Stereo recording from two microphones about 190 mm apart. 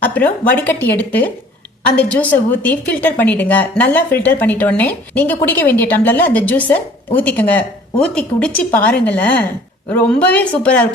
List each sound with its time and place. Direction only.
0.0 s a woman's voice: 10° left (ahead or behind)